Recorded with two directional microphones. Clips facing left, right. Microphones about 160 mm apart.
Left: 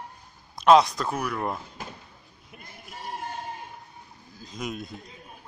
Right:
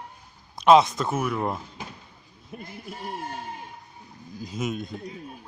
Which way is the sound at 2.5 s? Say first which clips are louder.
Right 9 dB; 40° right (ahead or behind).